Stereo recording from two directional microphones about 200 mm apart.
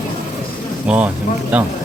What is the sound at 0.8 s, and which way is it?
Speech, 5° right (ahead or behind).